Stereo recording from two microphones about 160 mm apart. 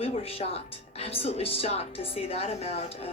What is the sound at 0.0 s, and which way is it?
Speech, 35° left (ahead or behind).